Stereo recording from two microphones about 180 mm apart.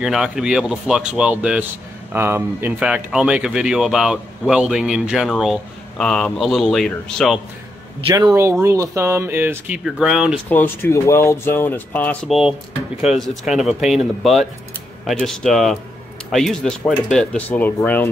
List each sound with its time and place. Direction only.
0.0 s speech: 5° right (ahead or behind)
8.1 s speech: 20° right (ahead or behind); by 10.3 s 5° right (ahead or behind)
10.5 s speech: 10° left (ahead or behind)
12.4 s speech: 5° right (ahead or behind)